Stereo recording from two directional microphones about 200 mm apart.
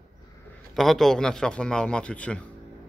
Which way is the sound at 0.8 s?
Centre (ahead or behind).